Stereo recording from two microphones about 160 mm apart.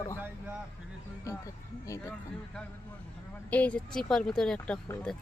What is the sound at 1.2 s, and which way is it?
Speech, 20° left (ahead or behind).